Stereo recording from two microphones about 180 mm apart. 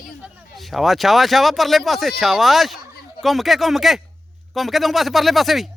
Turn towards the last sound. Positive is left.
turn(degrees=0)  # may be behind; listen again after turning